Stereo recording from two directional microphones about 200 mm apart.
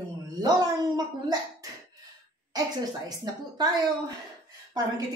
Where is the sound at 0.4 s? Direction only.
20° right (ahead or behind).